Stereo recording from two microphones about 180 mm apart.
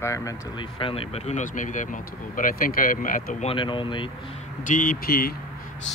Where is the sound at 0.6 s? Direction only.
30° left (ahead or behind); by 3.5 s 45° left (ahead or behind).